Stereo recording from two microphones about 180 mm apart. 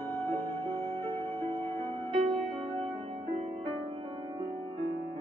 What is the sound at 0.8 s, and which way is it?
Music, 30° right (ahead or behind).